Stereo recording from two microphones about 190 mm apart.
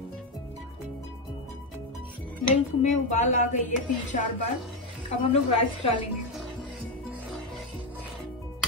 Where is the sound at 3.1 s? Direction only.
40° left (ahead or behind).